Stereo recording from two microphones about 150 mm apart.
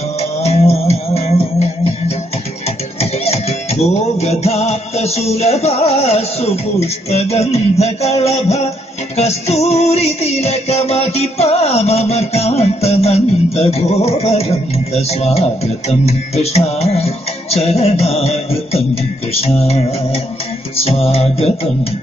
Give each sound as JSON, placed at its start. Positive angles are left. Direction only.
{"t": 0.2, "sound": "music", "side_deg": 45}